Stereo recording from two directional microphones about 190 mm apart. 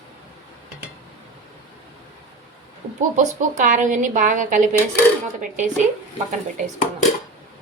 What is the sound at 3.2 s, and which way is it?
A woman's voice, 40° right (ahead or behind).